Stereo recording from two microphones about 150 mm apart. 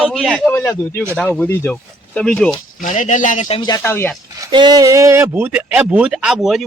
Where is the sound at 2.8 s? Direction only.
60° left (ahead or behind).